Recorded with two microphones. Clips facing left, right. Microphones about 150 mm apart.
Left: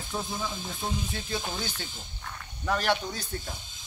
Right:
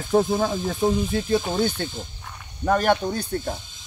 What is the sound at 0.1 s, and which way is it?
Speech, 60° right (ahead or behind).